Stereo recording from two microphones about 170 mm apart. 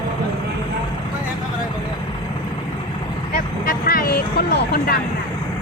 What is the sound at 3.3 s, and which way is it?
Speech, 60° left (ahead or behind).